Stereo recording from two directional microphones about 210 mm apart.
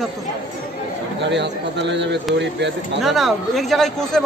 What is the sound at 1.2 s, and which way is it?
Speech, 55° right (ahead or behind).